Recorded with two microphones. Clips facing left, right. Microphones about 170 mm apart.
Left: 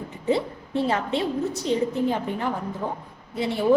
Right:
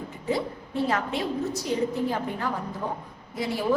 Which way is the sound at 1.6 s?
20° left (ahead or behind).